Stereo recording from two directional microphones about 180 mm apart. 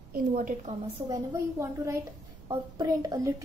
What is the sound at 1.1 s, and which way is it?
A woman's voice, 15° right (ahead or behind).